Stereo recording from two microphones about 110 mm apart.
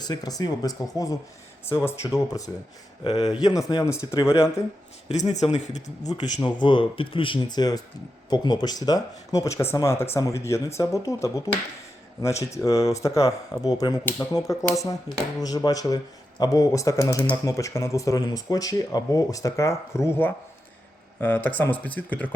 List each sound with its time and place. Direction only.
0.0 s speech: 35° left (ahead or behind)
5.5 s speech: 90° left
6.1 s speech: 40° left (ahead or behind); by 22.3 s 15° left (ahead or behind)